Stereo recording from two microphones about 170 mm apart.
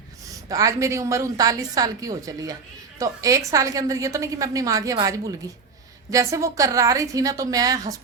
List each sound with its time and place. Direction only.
0.3 s a woman's voice: 20° right (ahead or behind)